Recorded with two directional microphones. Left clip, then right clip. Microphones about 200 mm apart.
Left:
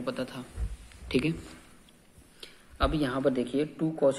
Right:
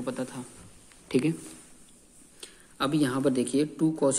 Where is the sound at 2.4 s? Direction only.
50° right (ahead or behind); by 3.7 s 65° right (ahead or behind).